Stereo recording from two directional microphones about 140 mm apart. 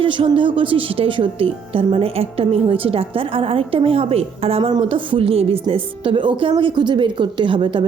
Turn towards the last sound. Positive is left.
turn(degrees=-35)  # may be behind; listen again after turning